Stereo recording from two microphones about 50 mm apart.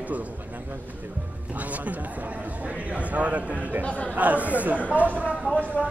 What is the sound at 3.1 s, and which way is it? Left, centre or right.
A man's voice, right.